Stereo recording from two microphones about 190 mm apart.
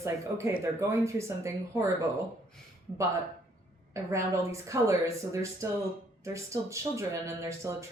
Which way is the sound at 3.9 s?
15° right (ahead or behind).